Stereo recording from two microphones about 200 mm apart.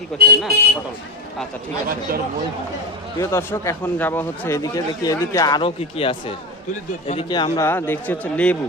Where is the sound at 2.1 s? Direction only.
45° right (ahead or behind).